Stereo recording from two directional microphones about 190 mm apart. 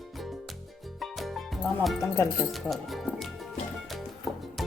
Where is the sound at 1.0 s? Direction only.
Centre (ahead or behind).